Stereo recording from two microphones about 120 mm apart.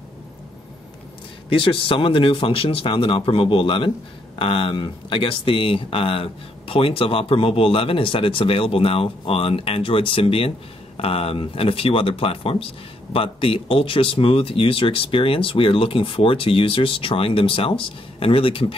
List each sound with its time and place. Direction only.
1.5 s speech: 45° left (ahead or behind)